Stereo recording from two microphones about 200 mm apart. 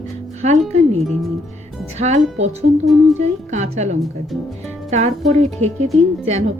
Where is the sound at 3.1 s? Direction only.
35° right (ahead or behind).